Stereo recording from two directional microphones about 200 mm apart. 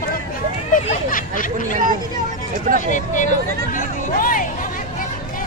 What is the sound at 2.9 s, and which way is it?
Speech, 40° left (ahead or behind).